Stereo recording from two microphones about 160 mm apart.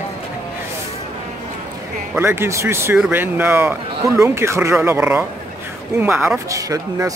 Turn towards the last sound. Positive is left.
turn(degrees=-20)  # may be behind; listen again after turning